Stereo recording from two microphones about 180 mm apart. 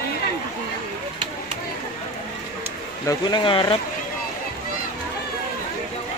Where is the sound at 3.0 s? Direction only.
25° left (ahead or behind).